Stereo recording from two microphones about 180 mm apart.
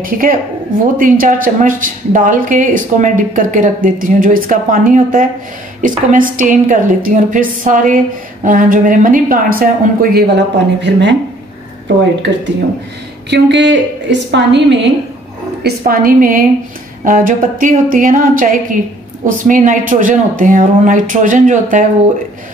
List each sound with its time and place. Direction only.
0.0 s a woman's voice: 50° right (ahead or behind); by 11.1 s 75° right (ahead or behind)
13.3 s a woman's voice: 75° right (ahead or behind)
15.8 s a woman's voice: 50° right (ahead or behind)